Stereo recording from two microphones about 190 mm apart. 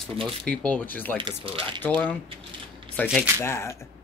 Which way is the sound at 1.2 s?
25° right (ahead or behind).